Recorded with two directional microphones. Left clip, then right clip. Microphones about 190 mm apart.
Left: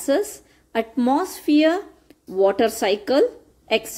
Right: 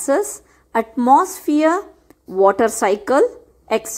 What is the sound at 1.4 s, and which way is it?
Speech, 10° right (ahead or behind).